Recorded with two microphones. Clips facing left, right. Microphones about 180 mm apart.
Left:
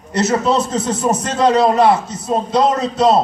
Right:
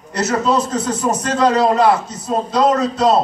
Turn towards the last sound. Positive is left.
turn(degrees=25)  # may be behind; listen again after turning